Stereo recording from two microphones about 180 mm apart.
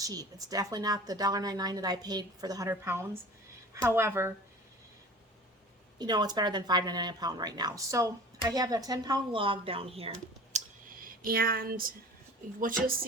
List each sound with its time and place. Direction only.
0.0 s a woman's voice: 20° right (ahead or behind)
6.0 s a woman's voice: 25° right (ahead or behind)
10.5 s clicking: 40° right (ahead or behind)
11.0 s a woman's voice: 55° right (ahead or behind)